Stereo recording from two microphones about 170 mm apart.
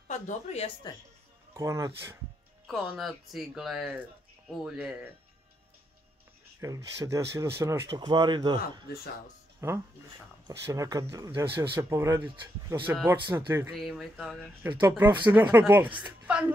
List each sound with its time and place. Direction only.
0.1 s speech: 40° left (ahead or behind)
1.5 s speech: 15° right (ahead or behind)
2.6 s speech: centre (ahead or behind)
6.6 s speech: 20° right (ahead or behind)
7.9 s speech: 25° right (ahead or behind)
9.6 s speech: 15° right (ahead or behind)
13.7 s speech: centre (ahead or behind)
14.6 s a woman's voice: 15° right (ahead or behind)